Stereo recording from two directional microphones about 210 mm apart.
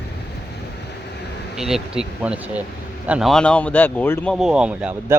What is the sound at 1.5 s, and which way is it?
Speech, centre (ahead or behind).